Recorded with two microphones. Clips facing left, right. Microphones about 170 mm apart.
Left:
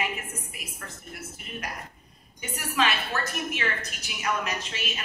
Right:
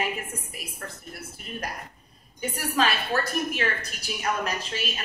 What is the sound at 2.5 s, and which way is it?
A woman's voice, 35° right (ahead or behind).